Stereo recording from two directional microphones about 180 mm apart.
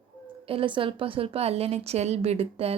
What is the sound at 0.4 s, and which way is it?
A woman's voice, 30° right (ahead or behind).